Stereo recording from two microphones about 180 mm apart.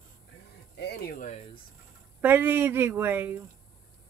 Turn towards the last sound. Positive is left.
turn(degrees=-10)  # may be behind; listen again after turning